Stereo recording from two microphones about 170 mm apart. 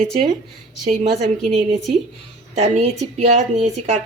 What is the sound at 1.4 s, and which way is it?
Speech, centre (ahead or behind).